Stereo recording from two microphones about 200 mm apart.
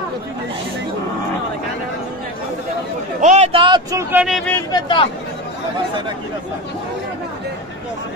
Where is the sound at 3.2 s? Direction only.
35° right (ahead or behind).